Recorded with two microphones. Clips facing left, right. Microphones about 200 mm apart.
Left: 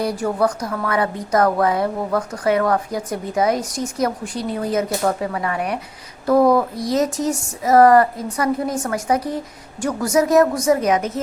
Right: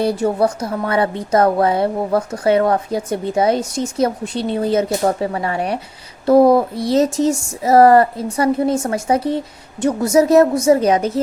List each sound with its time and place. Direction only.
0.0 s speech: 25° right (ahead or behind)